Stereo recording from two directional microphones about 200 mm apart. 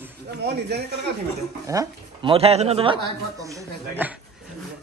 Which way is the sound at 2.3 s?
30° right (ahead or behind).